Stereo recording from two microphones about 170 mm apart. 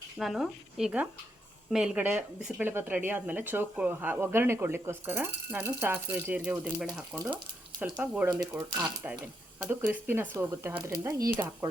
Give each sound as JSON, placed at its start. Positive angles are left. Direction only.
{"t": 0.2, "sound": "speech", "side_deg": 0}